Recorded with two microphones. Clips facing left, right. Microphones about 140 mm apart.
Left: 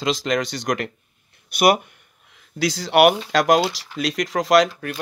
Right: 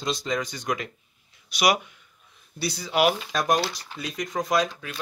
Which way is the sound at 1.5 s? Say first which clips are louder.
Left 6 dB; 55° left (ahead or behind).